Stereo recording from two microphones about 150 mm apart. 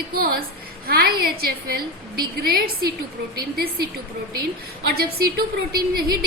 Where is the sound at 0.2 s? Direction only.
80° right.